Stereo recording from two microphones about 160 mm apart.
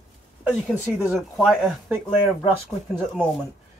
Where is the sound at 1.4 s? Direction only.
5° right (ahead or behind).